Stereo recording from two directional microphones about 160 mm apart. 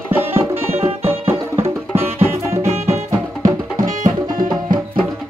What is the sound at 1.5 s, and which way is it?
Music, 15° right (ahead or behind).